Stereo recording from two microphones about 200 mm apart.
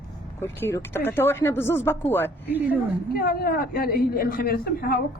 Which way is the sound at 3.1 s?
45° left (ahead or behind).